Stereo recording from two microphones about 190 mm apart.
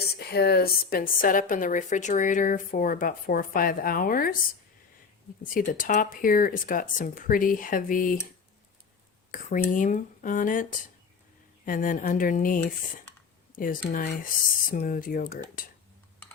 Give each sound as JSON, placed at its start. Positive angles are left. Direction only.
{"t": 0.2, "sound": "a woman's voice", "side_deg": 60}
{"t": 5.5, "sound": "a woman's voice", "side_deg": 45}
{"t": 9.3, "sound": "a woman's voice", "side_deg": 45}
{"t": 13.6, "sound": "a woman's voice", "side_deg": 45}